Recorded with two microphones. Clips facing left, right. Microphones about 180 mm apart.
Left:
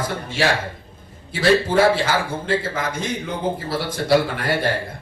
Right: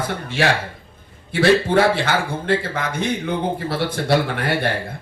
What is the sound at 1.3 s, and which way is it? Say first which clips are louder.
Speech: right 2 dB; 60° right (ahead or behind).